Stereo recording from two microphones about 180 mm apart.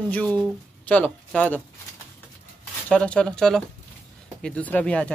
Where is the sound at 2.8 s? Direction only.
5° left (ahead or behind).